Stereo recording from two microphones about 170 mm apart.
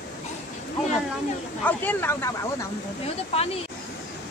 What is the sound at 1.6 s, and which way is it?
Speech, 10° left (ahead or behind).